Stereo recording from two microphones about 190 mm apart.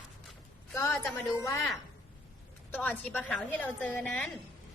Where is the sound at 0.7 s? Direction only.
15° left (ahead or behind).